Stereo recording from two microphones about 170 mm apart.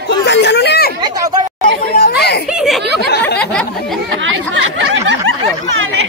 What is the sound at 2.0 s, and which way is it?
Children playing, 70° left (ahead or behind).